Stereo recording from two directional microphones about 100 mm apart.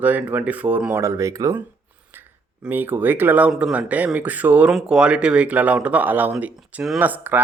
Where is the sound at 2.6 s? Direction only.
20° right (ahead or behind).